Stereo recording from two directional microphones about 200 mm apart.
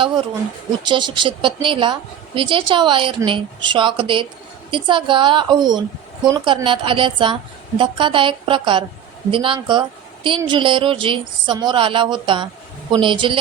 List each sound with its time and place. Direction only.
0.0 s a woman's voice: 25° right (ahead or behind)